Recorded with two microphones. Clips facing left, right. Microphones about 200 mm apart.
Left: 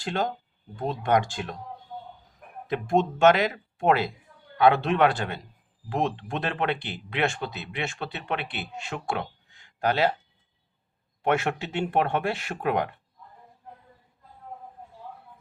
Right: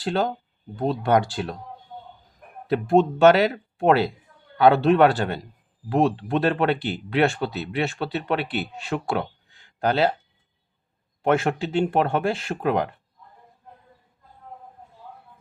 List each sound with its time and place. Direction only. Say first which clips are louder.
0.0 s speech: right 4 dB; 35° right (ahead or behind)
2.6 s speech: right 5 dB; 35° right (ahead or behind)
11.2 s speech: right 4 dB; 35° right (ahead or behind)